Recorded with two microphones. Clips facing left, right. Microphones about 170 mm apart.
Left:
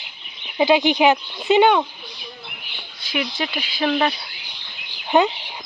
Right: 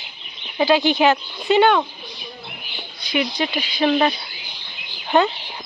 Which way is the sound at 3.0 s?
Centre (ahead or behind).